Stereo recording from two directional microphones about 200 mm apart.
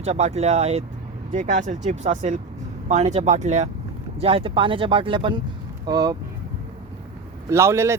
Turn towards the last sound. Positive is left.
turn(degrees=-15)  # may be behind; listen again after turning